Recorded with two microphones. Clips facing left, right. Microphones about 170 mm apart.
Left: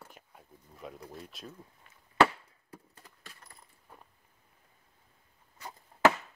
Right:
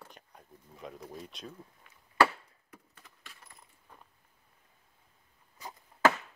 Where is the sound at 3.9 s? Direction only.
5° left (ahead or behind).